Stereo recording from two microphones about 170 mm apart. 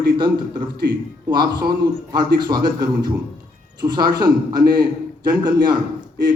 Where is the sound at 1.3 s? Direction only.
25° right (ahead or behind).